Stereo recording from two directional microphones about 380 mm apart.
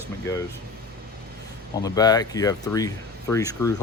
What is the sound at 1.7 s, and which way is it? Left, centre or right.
Speech, centre.